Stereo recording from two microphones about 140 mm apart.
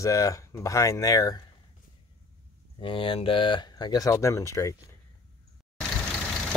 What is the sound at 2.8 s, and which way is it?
Speech, 40° left (ahead or behind).